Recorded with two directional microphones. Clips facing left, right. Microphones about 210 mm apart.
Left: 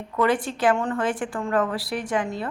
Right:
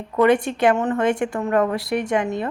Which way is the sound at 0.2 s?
25° right (ahead or behind).